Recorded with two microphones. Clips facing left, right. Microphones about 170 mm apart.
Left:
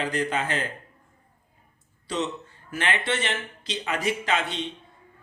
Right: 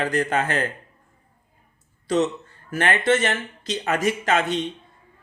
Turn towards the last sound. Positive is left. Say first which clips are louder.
# right 5 dB
turn(degrees=-45)  # may be behind; listen again after turning